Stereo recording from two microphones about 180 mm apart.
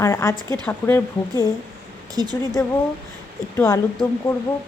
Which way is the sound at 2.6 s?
15° left (ahead or behind).